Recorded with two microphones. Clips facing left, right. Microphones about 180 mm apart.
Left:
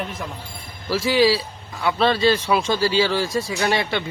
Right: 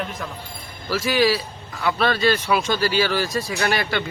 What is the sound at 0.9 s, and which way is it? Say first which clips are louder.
Speech: left 2 dB; 25° left (ahead or behind).